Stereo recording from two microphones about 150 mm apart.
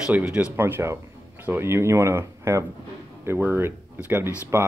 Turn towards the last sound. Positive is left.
turn(degrees=-15)  # may be behind; listen again after turning